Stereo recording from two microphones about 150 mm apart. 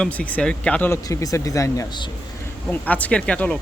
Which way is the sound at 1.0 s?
20° left (ahead or behind).